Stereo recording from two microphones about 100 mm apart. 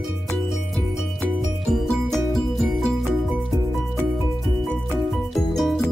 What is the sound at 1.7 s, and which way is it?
Music, 5° left (ahead or behind).